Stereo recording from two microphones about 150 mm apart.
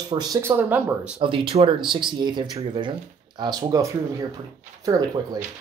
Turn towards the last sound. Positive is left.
turn(degrees=-25)  # may be behind; listen again after turning